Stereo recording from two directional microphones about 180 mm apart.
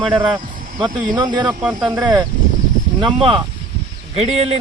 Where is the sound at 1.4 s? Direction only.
10° right (ahead or behind).